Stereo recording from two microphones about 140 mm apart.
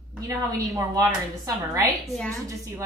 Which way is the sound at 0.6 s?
25° right (ahead or behind).